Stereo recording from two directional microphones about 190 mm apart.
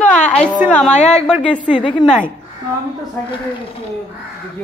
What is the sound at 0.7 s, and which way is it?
Speech, 5° left (ahead or behind).